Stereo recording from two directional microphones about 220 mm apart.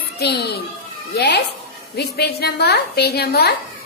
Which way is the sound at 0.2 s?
45° left (ahead or behind).